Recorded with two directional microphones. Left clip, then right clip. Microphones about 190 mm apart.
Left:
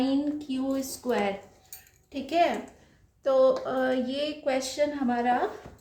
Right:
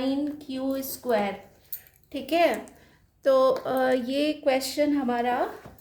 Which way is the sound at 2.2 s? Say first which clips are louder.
Right 2 dB; 45° right (ahead or behind).